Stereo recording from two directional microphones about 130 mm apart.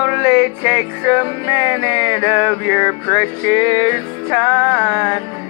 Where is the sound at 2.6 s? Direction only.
20° right (ahead or behind).